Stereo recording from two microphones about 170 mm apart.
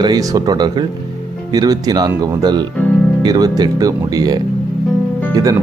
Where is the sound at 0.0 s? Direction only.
20° right (ahead or behind).